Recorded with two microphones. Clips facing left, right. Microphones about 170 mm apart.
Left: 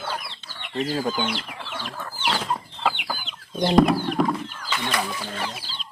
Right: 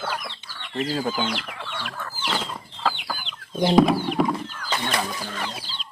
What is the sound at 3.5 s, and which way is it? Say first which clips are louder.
Speech: even; 5° right (ahead or behind).